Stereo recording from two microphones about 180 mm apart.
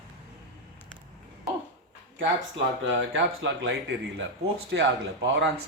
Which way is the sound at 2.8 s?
90° right.